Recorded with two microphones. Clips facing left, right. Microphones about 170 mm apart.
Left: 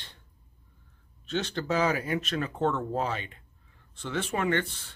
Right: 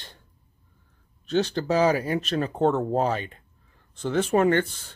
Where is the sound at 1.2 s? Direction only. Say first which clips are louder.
Right 6 dB; 35° right (ahead or behind).